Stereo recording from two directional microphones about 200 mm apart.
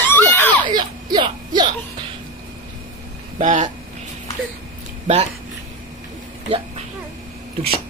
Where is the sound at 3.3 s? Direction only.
40° right (ahead or behind).